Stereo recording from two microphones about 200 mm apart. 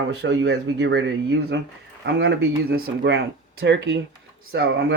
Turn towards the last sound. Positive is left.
turn(degrees=-55)  # may be behind; listen again after turning